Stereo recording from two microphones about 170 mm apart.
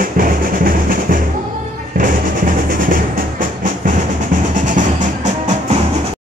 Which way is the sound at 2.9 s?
55° right (ahead or behind).